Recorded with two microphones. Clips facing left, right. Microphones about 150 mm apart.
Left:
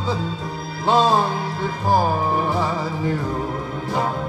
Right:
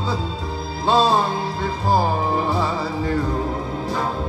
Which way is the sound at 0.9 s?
20° left (ahead or behind).